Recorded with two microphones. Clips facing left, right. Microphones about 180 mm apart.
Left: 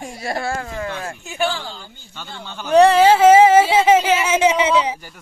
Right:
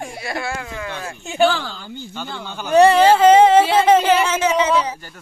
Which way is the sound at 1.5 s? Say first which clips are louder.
Right 4 dB; 70° right (ahead or behind).